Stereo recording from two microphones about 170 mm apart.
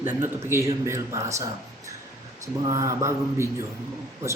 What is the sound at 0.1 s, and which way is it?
Speech, 15° right (ahead or behind).